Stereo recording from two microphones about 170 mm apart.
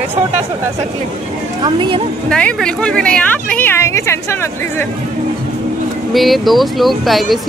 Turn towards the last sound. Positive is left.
turn(degrees=0)  # may be behind; listen again after turning